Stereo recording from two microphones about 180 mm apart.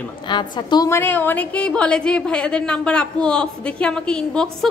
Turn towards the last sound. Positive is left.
turn(degrees=5)  # may be behind; listen again after turning